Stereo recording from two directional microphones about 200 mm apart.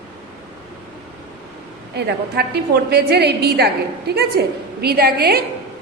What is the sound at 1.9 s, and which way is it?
A woman's voice, 55° right (ahead or behind).